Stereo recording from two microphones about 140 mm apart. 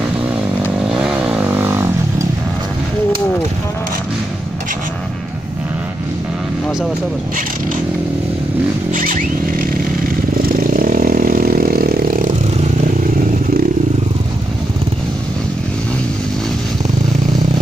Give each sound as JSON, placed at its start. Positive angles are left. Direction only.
{"t": 0.9, "sound": "motorcycle", "side_deg": -10}
{"t": 8.9, "sound": "zipper", "side_deg": -75}
{"t": 10.7, "sound": "vehicle", "side_deg": -75}